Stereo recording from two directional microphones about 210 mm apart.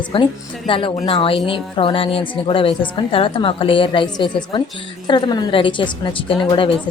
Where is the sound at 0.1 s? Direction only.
25° left (ahead or behind).